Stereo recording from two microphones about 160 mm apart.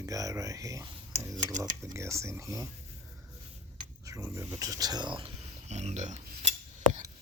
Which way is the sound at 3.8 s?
20° right (ahead or behind).